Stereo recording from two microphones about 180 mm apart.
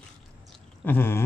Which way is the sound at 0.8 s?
10° left (ahead or behind).